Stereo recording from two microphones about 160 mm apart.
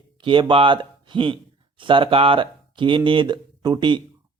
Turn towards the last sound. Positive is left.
turn(degrees=-25)  # may be behind; listen again after turning